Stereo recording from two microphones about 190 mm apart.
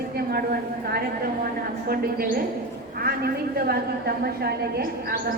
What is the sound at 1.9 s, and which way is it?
Speech, 50° right (ahead or behind).